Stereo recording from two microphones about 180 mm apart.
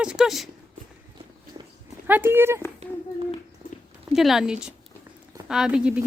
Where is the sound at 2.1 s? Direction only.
10° right (ahead or behind).